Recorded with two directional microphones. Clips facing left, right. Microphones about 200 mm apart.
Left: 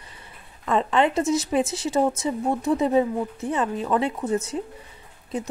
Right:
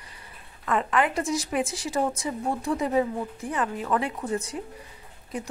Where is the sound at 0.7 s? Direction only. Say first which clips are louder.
Left 4 dB; 25° left (ahead or behind).